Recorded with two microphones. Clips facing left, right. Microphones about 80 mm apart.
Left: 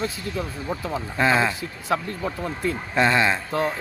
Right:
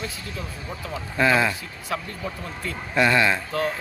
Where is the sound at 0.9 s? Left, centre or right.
Left.